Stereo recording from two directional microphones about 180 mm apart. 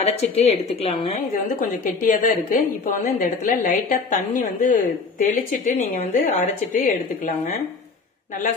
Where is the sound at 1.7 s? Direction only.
45° left (ahead or behind).